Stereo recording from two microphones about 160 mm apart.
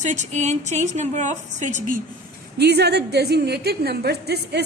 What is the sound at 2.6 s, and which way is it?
A woman's voice, 90° right.